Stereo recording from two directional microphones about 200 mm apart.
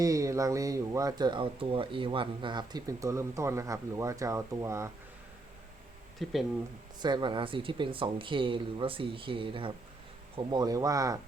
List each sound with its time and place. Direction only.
0.0 s speech: 15° right (ahead or behind)
6.2 s speech: centre (ahead or behind)
7.0 s speech: 20° right (ahead or behind)